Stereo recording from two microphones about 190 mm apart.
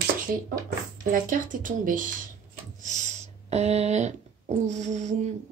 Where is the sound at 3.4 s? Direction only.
35° right (ahead or behind).